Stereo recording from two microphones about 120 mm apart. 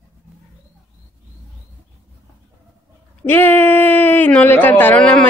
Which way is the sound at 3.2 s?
20° left (ahead or behind).